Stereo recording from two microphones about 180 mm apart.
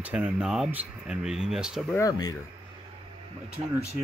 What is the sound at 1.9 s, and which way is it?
Speech, 20° left (ahead or behind).